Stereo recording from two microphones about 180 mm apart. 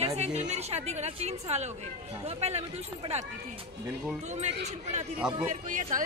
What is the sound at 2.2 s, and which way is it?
Speech, 35° right (ahead or behind).